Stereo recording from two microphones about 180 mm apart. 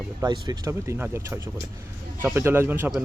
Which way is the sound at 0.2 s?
20° right (ahead or behind).